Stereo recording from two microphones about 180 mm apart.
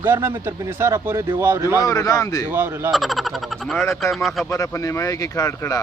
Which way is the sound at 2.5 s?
10° right (ahead or behind).